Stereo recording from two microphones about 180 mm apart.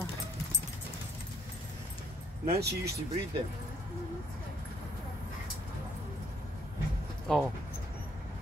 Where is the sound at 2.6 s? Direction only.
65° right (ahead or behind).